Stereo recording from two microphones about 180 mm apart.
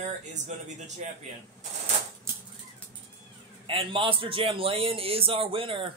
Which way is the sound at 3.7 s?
30° right (ahead or behind).